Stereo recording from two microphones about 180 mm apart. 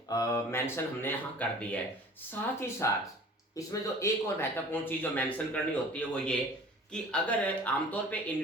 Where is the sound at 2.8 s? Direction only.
15° left (ahead or behind).